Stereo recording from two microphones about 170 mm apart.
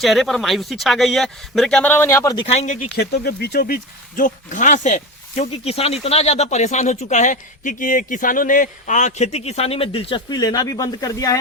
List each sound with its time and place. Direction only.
0.0 s speech: centre (ahead or behind); by 2.7 s 40° left (ahead or behind)
2.9 s speech: 70° left (ahead or behind)
4.2 s speech: 45° left (ahead or behind); by 11.3 s 20° left (ahead or behind)